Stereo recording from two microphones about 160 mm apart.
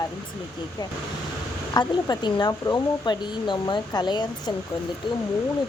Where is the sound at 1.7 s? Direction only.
25° left (ahead or behind).